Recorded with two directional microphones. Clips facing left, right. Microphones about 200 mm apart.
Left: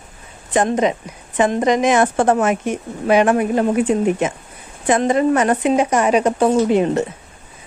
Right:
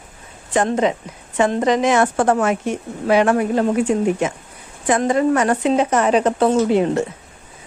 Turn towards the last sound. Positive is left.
turn(degrees=15)  # may be behind; listen again after turning